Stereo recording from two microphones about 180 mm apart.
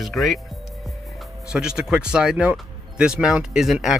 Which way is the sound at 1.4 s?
5° right (ahead or behind).